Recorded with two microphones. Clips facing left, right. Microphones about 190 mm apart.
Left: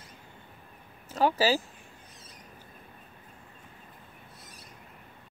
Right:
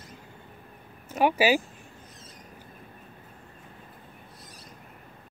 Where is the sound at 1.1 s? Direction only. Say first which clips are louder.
Right 3 dB; 15° right (ahead or behind).